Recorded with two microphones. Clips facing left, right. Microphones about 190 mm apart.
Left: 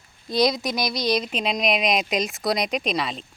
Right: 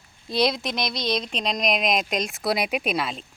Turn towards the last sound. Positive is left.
turn(degrees=0)  # may be behind; listen again after turning